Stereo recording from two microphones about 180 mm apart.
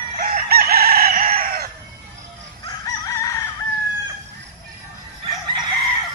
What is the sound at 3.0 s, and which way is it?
Chicken, 20° left (ahead or behind).